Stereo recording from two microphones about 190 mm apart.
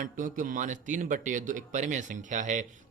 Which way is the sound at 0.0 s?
45° right (ahead or behind).